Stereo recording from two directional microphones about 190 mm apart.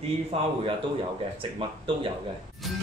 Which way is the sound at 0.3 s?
30° right (ahead or behind).